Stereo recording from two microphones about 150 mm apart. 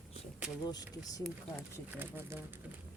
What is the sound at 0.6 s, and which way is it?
Speech, 25° left (ahead or behind).